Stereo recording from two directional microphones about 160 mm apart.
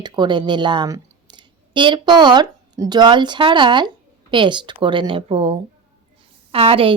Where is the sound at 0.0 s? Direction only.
30° right (ahead or behind).